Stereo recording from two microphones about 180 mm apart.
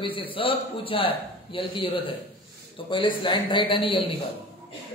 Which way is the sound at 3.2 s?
25° left (ahead or behind).